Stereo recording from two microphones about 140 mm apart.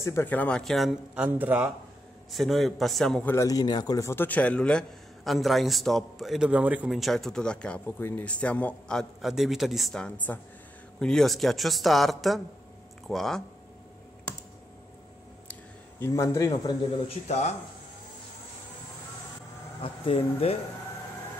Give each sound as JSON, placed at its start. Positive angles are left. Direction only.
{"t": 0.0, "sound": "a man's voice", "side_deg": 15}
{"t": 2.3, "sound": "a man's voice", "side_deg": 0}
{"t": 3.3, "sound": "a man's voice", "side_deg": 25}
{"t": 4.1, "sound": "a man's voice", "side_deg": 15}
{"t": 16.0, "sound": "a man's voice", "side_deg": 20}
{"t": 17.1, "sound": "speech", "side_deg": 50}
{"t": 19.8, "sound": "speech", "side_deg": 40}